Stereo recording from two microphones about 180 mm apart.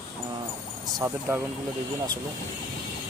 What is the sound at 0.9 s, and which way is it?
Speech, 20° right (ahead or behind).